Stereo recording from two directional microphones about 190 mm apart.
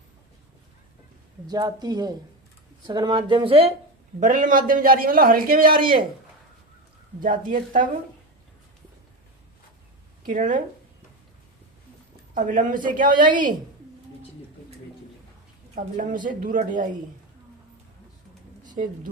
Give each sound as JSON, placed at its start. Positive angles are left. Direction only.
{"t": 1.5, "sound": "speech", "side_deg": -20}
{"t": 4.2, "sound": "a man's voice", "side_deg": -45}
{"t": 7.2, "sound": "a man's voice", "side_deg": -45}
{"t": 10.2, "sound": "a man's voice", "side_deg": -45}
{"t": 12.3, "sound": "a man's voice", "side_deg": -45}
{"t": 15.7, "sound": "a man's voice", "side_deg": -45}
{"t": 18.8, "sound": "a woman's voice", "side_deg": -40}